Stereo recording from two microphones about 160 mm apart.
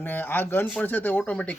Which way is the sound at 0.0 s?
10° left (ahead or behind).